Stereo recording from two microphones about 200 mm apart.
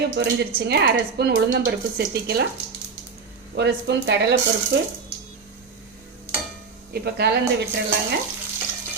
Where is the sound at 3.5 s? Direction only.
55° right (ahead or behind).